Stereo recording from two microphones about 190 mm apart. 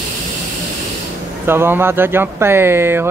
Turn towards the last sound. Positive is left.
turn(degrees=-10)  # may be behind; listen again after turning